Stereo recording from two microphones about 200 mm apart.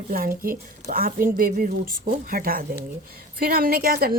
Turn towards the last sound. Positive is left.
turn(degrees=-50)  # may be behind; listen again after turning